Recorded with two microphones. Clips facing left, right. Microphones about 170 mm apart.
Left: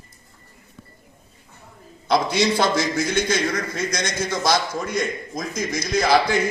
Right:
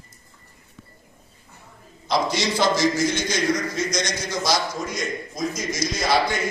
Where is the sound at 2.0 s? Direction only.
55° left (ahead or behind).